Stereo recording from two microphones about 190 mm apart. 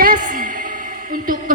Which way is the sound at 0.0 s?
45° right (ahead or behind).